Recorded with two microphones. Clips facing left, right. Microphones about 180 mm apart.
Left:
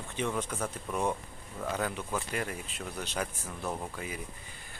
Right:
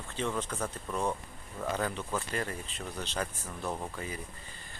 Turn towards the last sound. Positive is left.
turn(degrees=10)  # may be behind; listen again after turning